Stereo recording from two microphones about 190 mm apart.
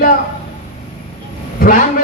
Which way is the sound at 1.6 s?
50° left (ahead or behind).